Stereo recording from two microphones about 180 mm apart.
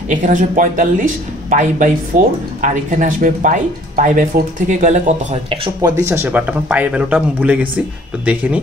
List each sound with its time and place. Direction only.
0.1 s speech: 45° right (ahead or behind)
5.8 s speech: 15° right (ahead or behind)